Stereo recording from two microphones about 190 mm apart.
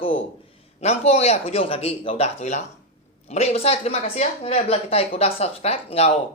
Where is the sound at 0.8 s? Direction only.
35° left (ahead or behind).